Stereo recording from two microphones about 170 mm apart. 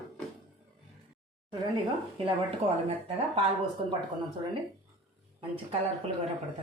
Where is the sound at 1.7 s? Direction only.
30° right (ahead or behind).